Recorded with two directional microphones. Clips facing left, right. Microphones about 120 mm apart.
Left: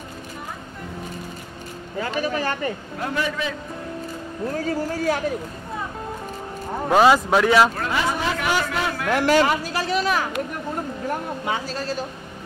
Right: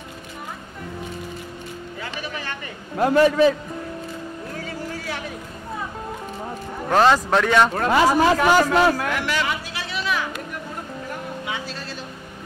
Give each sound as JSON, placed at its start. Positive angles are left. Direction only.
{"t": 2.0, "sound": "speech", "side_deg": 40}
{"t": 3.0, "sound": "a man's voice", "side_deg": -40}
{"t": 4.6, "sound": "speech", "side_deg": 40}
{"t": 6.9, "sound": "speech", "side_deg": 5}
{"t": 7.7, "sound": "a man's voice", "side_deg": -45}
{"t": 9.1, "sound": "speech", "side_deg": 40}
{"t": 11.4, "sound": "speech", "side_deg": 40}